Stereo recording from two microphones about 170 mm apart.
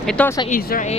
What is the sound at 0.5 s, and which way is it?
Speech, 50° left (ahead or behind).